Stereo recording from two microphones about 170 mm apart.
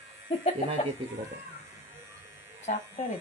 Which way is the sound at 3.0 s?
45° left (ahead or behind).